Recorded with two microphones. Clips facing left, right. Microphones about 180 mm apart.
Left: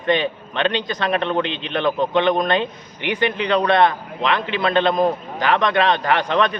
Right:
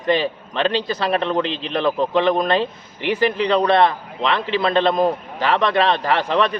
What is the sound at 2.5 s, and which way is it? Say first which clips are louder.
Speech: right 1 dB; 35° right (ahead or behind).